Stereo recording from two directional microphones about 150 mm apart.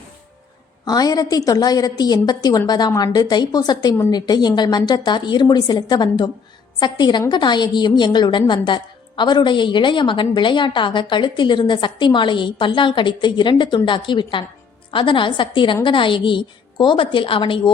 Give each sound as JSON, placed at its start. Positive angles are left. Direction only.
{"t": 0.9, "sound": "a woman's voice", "side_deg": 25}